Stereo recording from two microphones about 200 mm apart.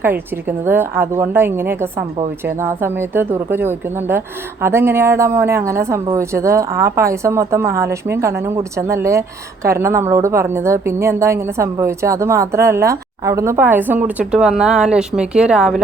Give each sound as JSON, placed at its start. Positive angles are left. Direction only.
{"t": 0.0, "sound": "a woman's voice", "side_deg": -10}